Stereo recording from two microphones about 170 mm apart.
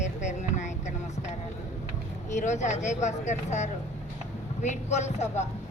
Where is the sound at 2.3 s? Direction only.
45° left (ahead or behind).